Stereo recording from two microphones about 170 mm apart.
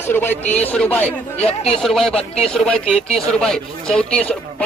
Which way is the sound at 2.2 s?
35° left (ahead or behind).